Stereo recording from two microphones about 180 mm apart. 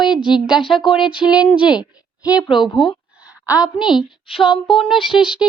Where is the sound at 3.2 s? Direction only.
10° right (ahead or behind).